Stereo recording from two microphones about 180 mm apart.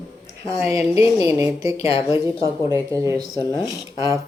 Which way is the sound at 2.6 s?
15° right (ahead or behind).